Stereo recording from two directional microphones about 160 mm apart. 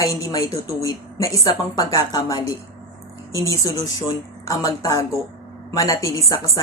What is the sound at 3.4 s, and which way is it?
A woman's voice, 20° left (ahead or behind).